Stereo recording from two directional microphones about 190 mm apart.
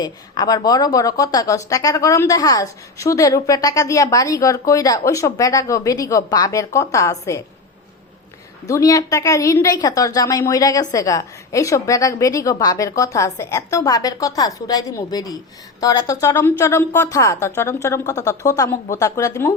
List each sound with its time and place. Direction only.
0.0 s a woman's voice: 20° left (ahead or behind)
8.6 s a woman's voice: 15° left (ahead or behind)